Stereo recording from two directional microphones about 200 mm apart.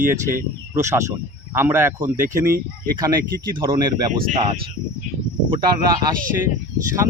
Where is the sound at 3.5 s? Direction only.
25° right (ahead or behind).